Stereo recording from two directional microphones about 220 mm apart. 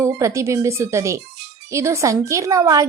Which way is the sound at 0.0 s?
15° right (ahead or behind).